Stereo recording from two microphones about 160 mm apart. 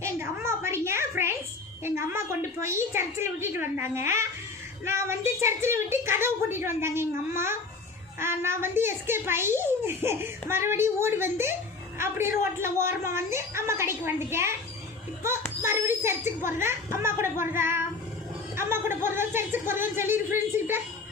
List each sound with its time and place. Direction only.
0.0 s a sound: 15° right (ahead or behind)
1.8 s a child's voice: 15° right (ahead or behind)
15.6 s a child's voice: 15° right (ahead or behind)